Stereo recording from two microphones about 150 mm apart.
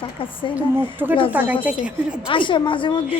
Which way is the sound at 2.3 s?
35° left (ahead or behind).